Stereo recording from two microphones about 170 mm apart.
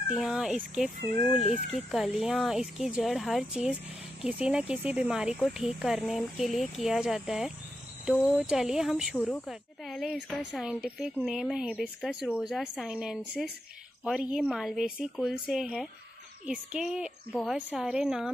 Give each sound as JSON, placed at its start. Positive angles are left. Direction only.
{"t": 0.1, "sound": "speech", "side_deg": -5}
{"t": 1.1, "sound": "speech", "side_deg": 35}
{"t": 1.9, "sound": "speech", "side_deg": 0}
{"t": 9.1, "sound": "speech", "side_deg": 10}